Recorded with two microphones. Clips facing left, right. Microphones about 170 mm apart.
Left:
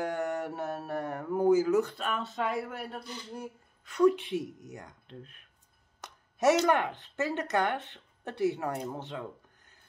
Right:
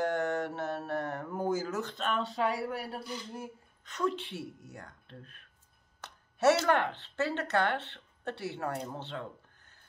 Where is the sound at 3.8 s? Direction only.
10° left (ahead or behind).